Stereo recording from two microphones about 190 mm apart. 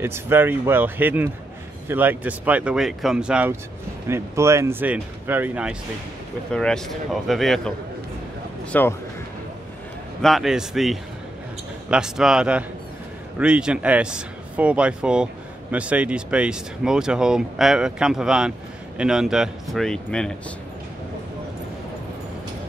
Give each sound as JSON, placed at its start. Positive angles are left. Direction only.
{"t": 0.0, "sound": "speech", "side_deg": -10}
{"t": 6.5, "sound": "speech", "side_deg": 5}
{"t": 8.7, "sound": "speech", "side_deg": 10}
{"t": 10.2, "sound": "speech", "side_deg": 0}